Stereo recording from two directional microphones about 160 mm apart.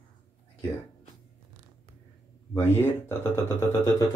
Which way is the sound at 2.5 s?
15° left (ahead or behind).